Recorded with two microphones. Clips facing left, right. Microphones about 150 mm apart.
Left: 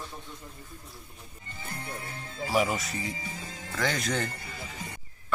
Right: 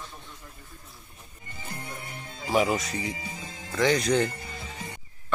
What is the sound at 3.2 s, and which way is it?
Music, 20° right (ahead or behind).